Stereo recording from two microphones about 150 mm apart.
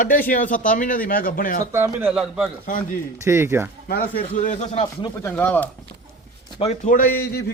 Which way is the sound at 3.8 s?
65° left (ahead or behind).